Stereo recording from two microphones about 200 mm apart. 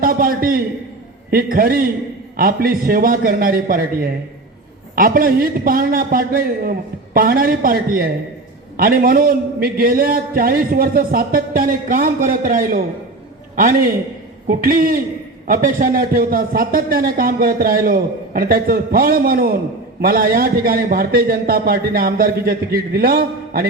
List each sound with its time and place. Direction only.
0.0 s a man's voice: 45° right (ahead or behind)